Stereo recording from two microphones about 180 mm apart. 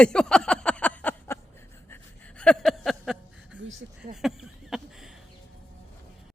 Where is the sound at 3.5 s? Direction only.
90° right.